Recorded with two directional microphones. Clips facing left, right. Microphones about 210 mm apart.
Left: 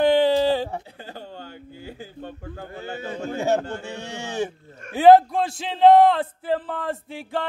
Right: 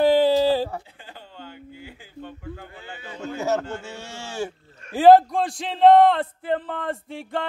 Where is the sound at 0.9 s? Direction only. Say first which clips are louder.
Left 6 dB; 40° left (ahead or behind).